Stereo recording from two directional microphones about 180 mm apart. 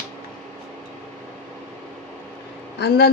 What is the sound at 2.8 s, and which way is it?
Speech, 65° left (ahead or behind).